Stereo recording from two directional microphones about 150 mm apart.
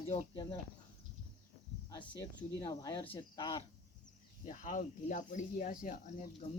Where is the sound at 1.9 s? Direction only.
25° left (ahead or behind).